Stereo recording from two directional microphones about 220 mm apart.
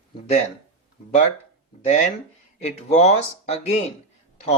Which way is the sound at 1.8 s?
30° left (ahead or behind).